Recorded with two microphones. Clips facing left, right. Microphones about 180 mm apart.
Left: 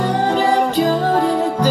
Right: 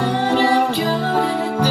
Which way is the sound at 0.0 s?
45° left (ahead or behind).